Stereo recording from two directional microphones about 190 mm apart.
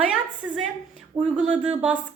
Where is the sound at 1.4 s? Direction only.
5° right (ahead or behind).